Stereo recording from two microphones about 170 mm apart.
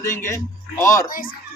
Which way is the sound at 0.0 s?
15° left (ahead or behind).